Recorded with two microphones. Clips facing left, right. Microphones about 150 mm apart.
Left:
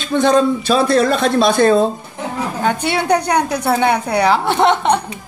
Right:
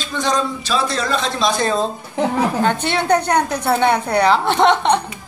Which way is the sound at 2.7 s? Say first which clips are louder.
Left 1 dB; 10° left (ahead or behind).